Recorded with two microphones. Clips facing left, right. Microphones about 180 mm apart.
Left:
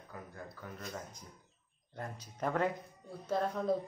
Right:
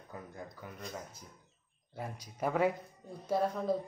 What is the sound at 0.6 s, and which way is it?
Speech, 10° right (ahead or behind).